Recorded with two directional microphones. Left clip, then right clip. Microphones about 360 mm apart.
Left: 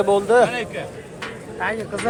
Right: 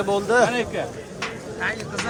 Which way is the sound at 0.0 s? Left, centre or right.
Centre.